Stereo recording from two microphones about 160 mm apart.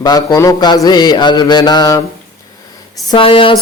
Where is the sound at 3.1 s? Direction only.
35° left (ahead or behind).